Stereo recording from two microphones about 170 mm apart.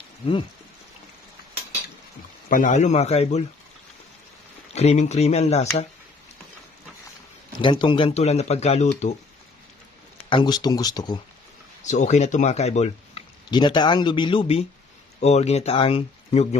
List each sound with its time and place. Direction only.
2.5 s speech: 50° left (ahead or behind)
4.7 s speech: 40° left (ahead or behind)
7.6 s speech: 30° left (ahead or behind)
10.2 s speech: 30° left (ahead or behind)
11.9 s speech: 45° left (ahead or behind)
13.5 s speech: 25° left (ahead or behind)